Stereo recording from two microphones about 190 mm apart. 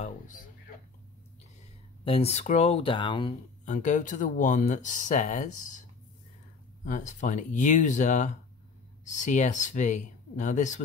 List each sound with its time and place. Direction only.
2.0 s speech: 30° left (ahead or behind)
3.6 s speech: 40° left (ahead or behind)